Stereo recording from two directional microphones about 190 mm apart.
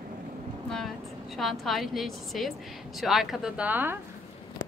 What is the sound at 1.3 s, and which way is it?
A woman's voice, centre (ahead or behind).